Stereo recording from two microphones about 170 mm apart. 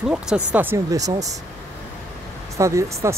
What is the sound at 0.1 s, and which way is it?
Speech, 5° right (ahead or behind).